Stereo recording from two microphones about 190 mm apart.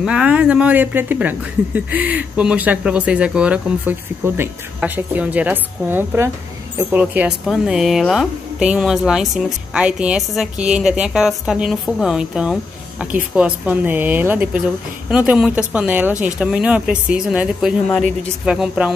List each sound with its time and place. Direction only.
0.0 s a woman's voice: 5° right (ahead or behind)